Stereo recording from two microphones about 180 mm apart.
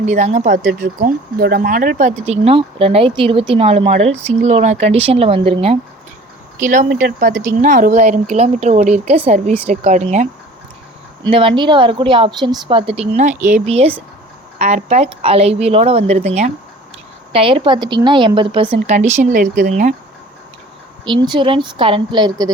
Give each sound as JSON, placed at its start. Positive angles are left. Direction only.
{"t": 0.0, "sound": "speech", "side_deg": -40}
{"t": 6.6, "sound": "speech", "side_deg": -45}
{"t": 11.2, "sound": "a woman's voice", "side_deg": -30}
{"t": 19.2, "sound": "speech", "side_deg": -45}
{"t": 21.0, "sound": "a woman's voice", "side_deg": -25}